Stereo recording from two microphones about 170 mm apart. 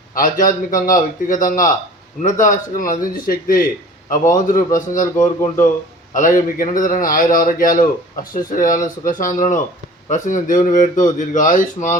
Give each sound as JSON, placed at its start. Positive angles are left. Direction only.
{"t": 0.1, "sound": "a man's voice", "side_deg": 55}
{"t": 5.1, "sound": "speech", "side_deg": 15}
{"t": 6.1, "sound": "a man's voice", "side_deg": 50}